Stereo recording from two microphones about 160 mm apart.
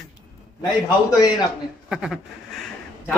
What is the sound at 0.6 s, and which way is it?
Speech, 25° left (ahead or behind).